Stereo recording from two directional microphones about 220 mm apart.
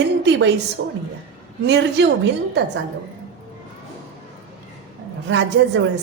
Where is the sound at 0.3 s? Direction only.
55° right (ahead or behind).